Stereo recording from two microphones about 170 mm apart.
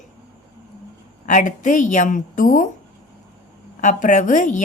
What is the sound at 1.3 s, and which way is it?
A woman's voice, 50° left (ahead or behind).